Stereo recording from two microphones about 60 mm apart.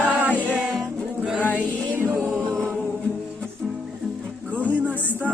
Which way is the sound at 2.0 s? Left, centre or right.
Right.